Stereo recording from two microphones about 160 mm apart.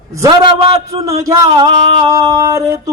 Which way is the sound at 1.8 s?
35° right (ahead or behind).